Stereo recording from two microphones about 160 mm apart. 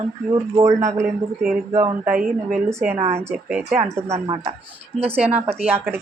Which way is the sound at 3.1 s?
15° right (ahead or behind).